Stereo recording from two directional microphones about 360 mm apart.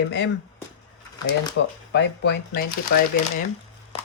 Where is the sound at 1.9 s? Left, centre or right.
Left.